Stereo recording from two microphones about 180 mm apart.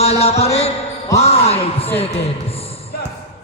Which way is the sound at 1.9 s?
35° left (ahead or behind).